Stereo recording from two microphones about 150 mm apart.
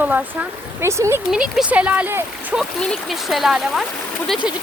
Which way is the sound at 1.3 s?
5° right (ahead or behind).